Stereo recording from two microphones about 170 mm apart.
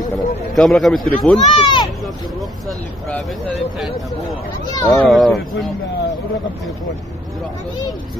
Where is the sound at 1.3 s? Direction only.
30° left (ahead or behind).